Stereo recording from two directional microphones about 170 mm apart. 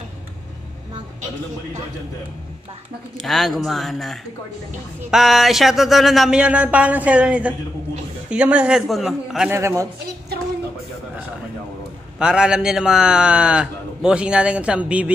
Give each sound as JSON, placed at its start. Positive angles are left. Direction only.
{"t": 3.2, "sound": "a man's voice", "side_deg": 0}
{"t": 9.5, "sound": "speech", "side_deg": -15}
{"t": 12.2, "sound": "a man's voice", "side_deg": -5}